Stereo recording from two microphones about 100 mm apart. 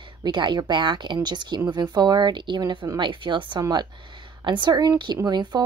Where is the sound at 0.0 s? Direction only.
50° right (ahead or behind).